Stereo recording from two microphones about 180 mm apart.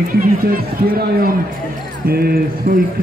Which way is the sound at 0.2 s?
55° right (ahead or behind).